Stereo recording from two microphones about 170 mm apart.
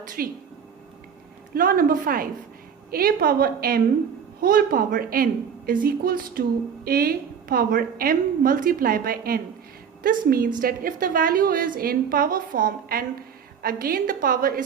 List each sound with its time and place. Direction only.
0.2 s a woman's voice: 60° right (ahead or behind)
1.5 s a woman's voice: 55° right (ahead or behind)